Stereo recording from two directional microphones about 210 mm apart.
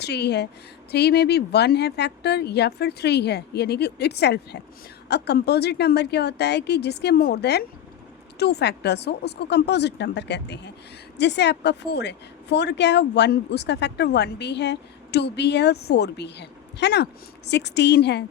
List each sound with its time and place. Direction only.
0.0 s a woman's voice: 50° left (ahead or behind)